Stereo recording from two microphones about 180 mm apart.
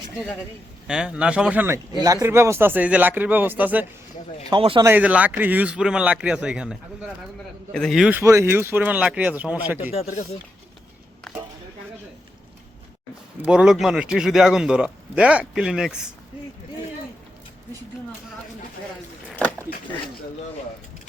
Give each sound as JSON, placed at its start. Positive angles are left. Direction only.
{"t": 0.9, "sound": "speech", "side_deg": -5}
{"t": 4.4, "sound": "speech", "side_deg": -25}
{"t": 4.9, "sound": "a man's voice", "side_deg": -10}
{"t": 8.2, "sound": "speech", "side_deg": -15}
{"t": 9.9, "sound": "speech", "side_deg": 35}
{"t": 13.4, "sound": "a man's voice", "side_deg": -5}
{"t": 19.4, "sound": "a sound", "side_deg": 10}